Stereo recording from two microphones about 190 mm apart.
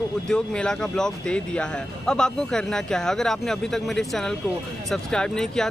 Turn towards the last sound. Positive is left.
turn(degrees=5)  # may be behind; listen again after turning